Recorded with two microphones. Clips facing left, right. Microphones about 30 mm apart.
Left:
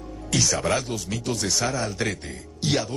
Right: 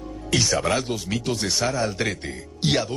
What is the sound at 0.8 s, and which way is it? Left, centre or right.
Speech, centre.